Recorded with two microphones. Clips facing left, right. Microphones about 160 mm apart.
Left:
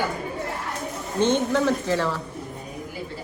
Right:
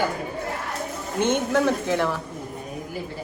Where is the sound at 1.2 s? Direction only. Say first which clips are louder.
Even; 10° right (ahead or behind).